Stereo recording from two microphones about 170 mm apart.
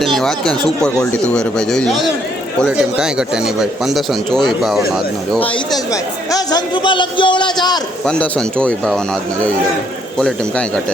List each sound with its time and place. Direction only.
0.0 s speech: centre (ahead or behind)
5.4 s a man's voice: 20° left (ahead or behind)
8.0 s speech: 5° left (ahead or behind)